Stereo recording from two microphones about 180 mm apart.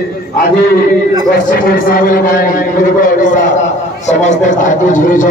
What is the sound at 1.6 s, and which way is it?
A man's voice, 55° left (ahead or behind).